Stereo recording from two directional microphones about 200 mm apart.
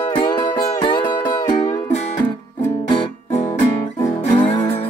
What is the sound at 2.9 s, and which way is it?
Music, 30° left (ahead or behind).